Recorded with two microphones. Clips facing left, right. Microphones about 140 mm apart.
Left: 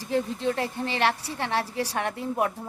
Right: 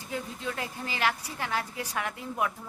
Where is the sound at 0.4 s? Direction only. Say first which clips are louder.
Left 8 dB; 35° left (ahead or behind).